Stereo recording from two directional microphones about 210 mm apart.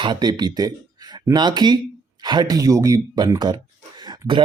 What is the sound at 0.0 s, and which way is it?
Speech, 20° right (ahead or behind).